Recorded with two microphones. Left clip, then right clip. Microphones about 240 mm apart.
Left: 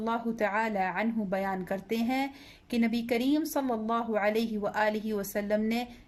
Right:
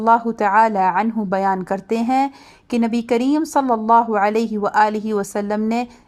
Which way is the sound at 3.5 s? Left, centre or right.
Right.